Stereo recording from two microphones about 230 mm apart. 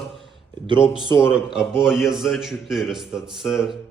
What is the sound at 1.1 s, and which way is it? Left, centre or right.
Speech, centre.